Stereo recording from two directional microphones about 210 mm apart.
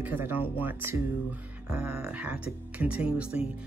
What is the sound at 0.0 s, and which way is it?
Speech, 10° right (ahead or behind).